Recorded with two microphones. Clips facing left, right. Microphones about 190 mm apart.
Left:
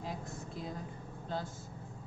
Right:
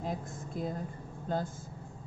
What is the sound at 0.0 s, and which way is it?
A woman's voice, 50° right (ahead or behind).